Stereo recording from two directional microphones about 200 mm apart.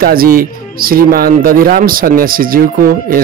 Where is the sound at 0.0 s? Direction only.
45° right (ahead or behind).